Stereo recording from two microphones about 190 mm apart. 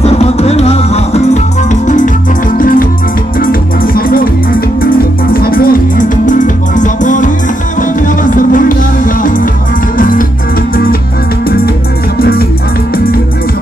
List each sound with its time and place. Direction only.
0.0 s music: 35° left (ahead or behind); by 4.3 s 50° left (ahead or behind)
5.3 s music: 50° left (ahead or behind)
11.4 s music: 50° left (ahead or behind)